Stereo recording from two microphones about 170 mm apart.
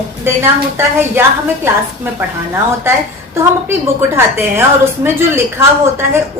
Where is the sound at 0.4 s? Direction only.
15° right (ahead or behind).